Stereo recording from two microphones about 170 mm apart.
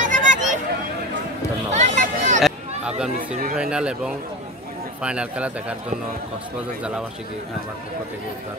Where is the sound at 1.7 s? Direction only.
45° right (ahead or behind).